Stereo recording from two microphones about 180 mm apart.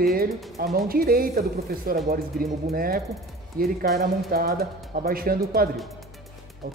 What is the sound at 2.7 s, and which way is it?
Speech, 55° right (ahead or behind).